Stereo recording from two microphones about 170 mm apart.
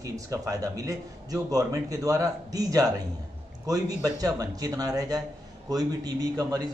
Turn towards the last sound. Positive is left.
turn(degrees=-20)  # may be behind; listen again after turning